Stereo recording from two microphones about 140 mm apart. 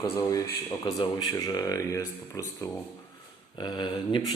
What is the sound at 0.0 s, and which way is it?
Speech, 25° left (ahead or behind).